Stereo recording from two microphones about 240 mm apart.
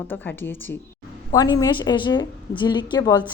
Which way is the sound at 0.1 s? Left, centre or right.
Centre.